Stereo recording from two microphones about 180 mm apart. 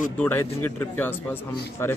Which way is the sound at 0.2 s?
10° left (ahead or behind).